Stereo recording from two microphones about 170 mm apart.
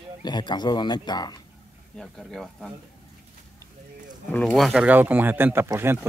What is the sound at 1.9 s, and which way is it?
Speech, 5° left (ahead or behind).